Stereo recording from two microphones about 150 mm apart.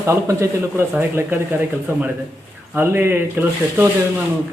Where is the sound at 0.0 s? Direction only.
20° right (ahead or behind).